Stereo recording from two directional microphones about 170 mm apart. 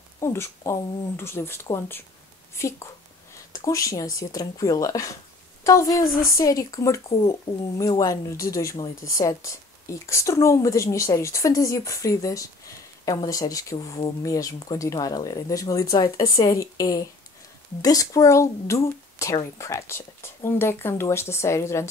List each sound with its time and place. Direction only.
0.2 s a woman's voice: 15° left (ahead or behind)